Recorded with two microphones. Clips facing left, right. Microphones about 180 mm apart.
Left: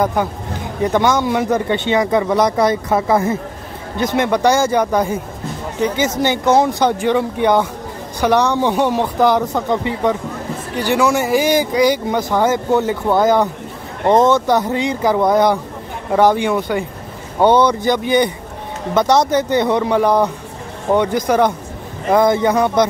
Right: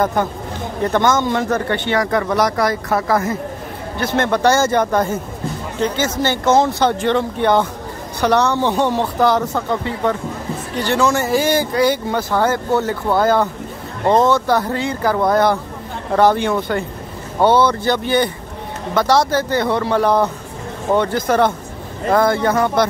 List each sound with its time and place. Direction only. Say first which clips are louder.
0.0 s speech: even; 10° left (ahead or behind)